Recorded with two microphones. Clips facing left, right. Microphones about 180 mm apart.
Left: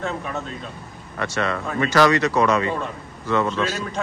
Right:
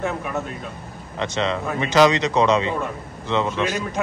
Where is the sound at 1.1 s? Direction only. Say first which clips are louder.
Right 1 dB; 20° right (ahead or behind).